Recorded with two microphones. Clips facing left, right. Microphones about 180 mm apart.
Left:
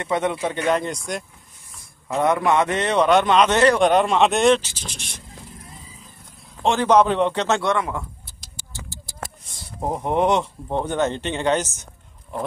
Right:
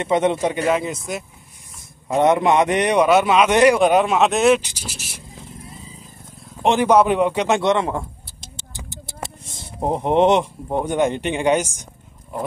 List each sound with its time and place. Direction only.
0.0 s a man's voice: 20° right (ahead or behind)
0.7 s speech: 5° right (ahead or behind)
1.8 s a man's voice: 20° right (ahead or behind)
6.5 s a sound: 15° right (ahead or behind)
10.7 s speech: 10° right (ahead or behind)